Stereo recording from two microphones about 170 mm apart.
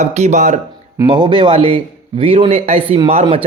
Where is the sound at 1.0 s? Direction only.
25° right (ahead or behind).